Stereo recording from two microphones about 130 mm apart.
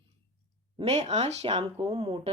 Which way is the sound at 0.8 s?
55° right (ahead or behind).